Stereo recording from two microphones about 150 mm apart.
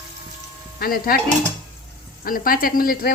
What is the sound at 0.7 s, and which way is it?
Speech, 75° left (ahead or behind).